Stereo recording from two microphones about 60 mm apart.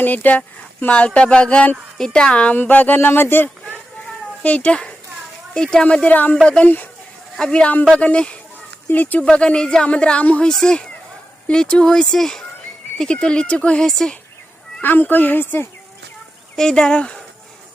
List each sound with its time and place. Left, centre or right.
0.0 s a woman's voice: left
2.6 s speech: left
4.0 s cat: left
5.5 s a woman's voice: centre; by 9.2 s left
9.2 s a woman's voice: centre
14.8 s speech: left
16.6 s a woman's voice: centre